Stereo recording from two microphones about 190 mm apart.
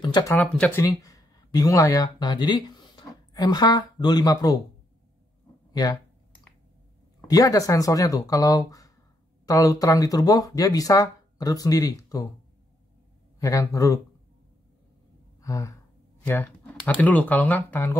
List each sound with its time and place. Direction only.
0.3 s speech: 10° left (ahead or behind)
5.7 s speech: 20° left (ahead or behind)
7.2 s speech: 20° left (ahead or behind)
13.4 s speech: 15° left (ahead or behind)
15.4 s gasp: 15° left (ahead or behind)
16.3 s speech: 10° left (ahead or behind)